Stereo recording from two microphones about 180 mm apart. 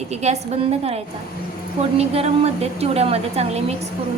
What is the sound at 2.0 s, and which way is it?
A woman's voice, 35° right (ahead or behind).